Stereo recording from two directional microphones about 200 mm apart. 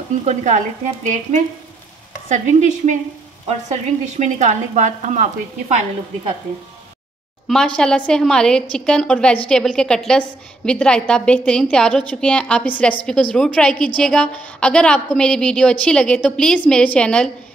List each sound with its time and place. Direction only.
0.1 s speech: 35° right (ahead or behind)
2.2 s speech: 40° right (ahead or behind)
7.4 s a woman's voice: 5° left (ahead or behind)